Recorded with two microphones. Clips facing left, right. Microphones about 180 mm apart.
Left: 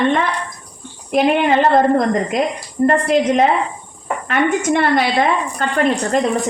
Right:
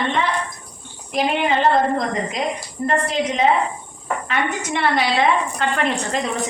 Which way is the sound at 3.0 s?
55° left (ahead or behind).